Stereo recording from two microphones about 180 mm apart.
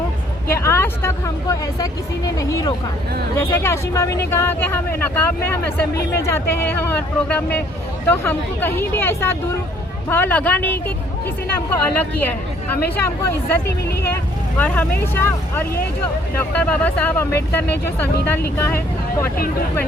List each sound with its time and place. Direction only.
0.5 s speech: 15° left (ahead or behind)
14.6 s speech: 10° left (ahead or behind)